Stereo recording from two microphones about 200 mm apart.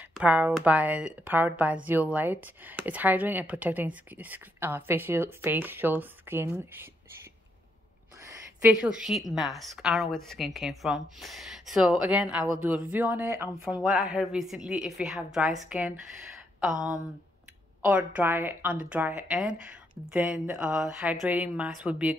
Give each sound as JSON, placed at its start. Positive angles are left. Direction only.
{"t": 0.1, "sound": "speech", "side_deg": -5}
{"t": 8.5, "sound": "a woman's voice", "side_deg": -5}
{"t": 17.8, "sound": "speech", "side_deg": -10}